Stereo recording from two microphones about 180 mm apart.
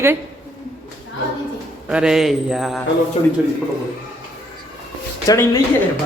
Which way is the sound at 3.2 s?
30° left (ahead or behind).